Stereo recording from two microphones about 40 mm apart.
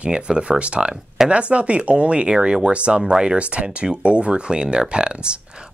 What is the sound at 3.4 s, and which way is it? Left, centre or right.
Speech, right.